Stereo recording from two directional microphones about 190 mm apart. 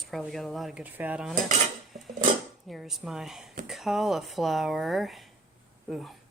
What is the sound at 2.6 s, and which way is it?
Speech, centre (ahead or behind).